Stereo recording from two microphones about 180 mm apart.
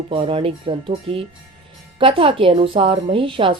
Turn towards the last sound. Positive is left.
turn(degrees=-30)  # may be behind; listen again after turning